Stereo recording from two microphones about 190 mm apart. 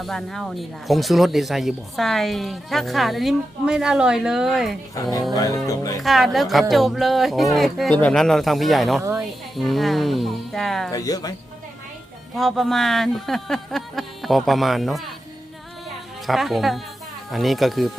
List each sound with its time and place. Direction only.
0.0 s speech: centre (ahead or behind)
5.3 s speech: 20° left (ahead or behind)
6.0 s speech: centre (ahead or behind)
10.9 s speech: 20° left (ahead or behind)
12.4 s speech: centre (ahead or behind)
16.2 s speech: centre (ahead or behind)